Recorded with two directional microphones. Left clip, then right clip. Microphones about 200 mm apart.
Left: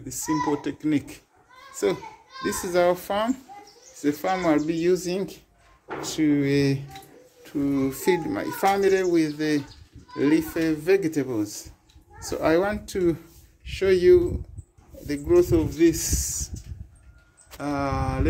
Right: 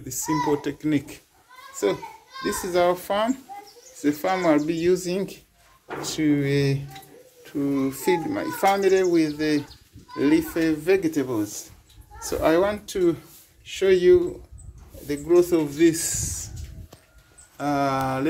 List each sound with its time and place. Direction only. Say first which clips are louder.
0.0 s speech: right 1 dB; centre (ahead or behind)
1.7 s a child's voice: right 1 dB; 20° left (ahead or behind)
17.6 s speech: right 4 dB; 10° left (ahead or behind)